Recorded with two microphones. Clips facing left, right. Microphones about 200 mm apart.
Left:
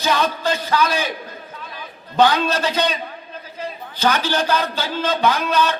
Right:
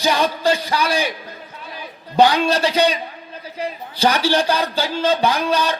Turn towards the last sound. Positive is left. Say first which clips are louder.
# even
turn(degrees=-15)  # may be behind; listen again after turning